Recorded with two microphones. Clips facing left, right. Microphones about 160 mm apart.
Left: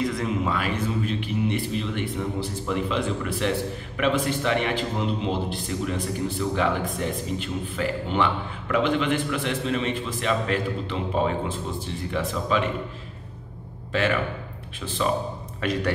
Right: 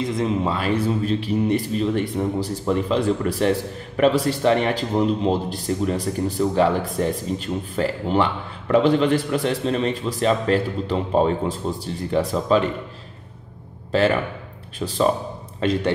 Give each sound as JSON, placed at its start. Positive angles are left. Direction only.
{"t": 0.0, "sound": "speech", "side_deg": -25}
{"t": 14.8, "sound": "speech", "side_deg": -40}
{"t": 15.6, "sound": "a man's voice", "side_deg": -30}